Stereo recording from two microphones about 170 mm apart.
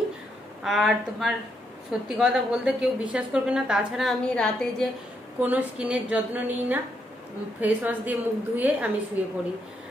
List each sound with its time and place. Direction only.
0.7 s a woman's voice: centre (ahead or behind)
5.4 s a woman's voice: 10° right (ahead or behind)